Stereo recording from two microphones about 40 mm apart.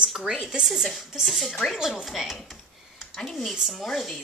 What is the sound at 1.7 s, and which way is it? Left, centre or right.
Speech, centre.